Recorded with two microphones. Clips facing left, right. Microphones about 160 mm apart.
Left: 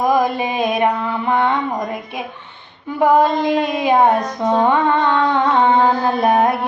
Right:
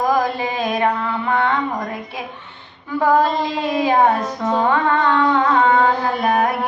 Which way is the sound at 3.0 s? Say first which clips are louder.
Left 3 dB; 20° left (ahead or behind).